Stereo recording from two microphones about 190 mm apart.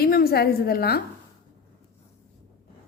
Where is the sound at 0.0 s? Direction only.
55° left (ahead or behind).